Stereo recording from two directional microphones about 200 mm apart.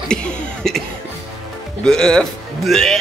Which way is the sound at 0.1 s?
5° left (ahead or behind).